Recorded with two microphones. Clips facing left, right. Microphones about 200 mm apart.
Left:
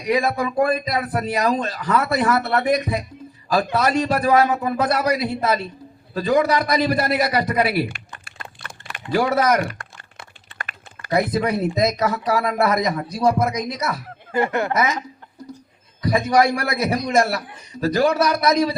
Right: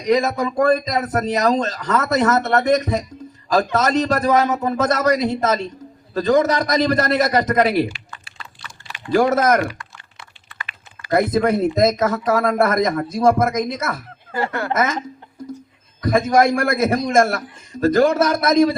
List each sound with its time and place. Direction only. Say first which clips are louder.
0.2 s speech: right 1 dB; 45° right (ahead or behind)
7.9 s typing: right 3 dB; 55° left (ahead or behind)
9.1 s speech: right 3 dB; 45° right (ahead or behind)
9.7 s typing: even; 50° left (ahead or behind)
11.1 s speech: right 3 dB; 50° right (ahead or behind)
14.3 s speech: left 3 dB; 20° left (ahead or behind)
14.7 s speech: right 1 dB; 50° right (ahead or behind)
16.0 s speech: right 2 dB; 50° right (ahead or behind)